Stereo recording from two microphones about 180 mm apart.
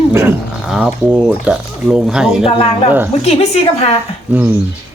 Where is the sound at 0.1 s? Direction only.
15° right (ahead or behind).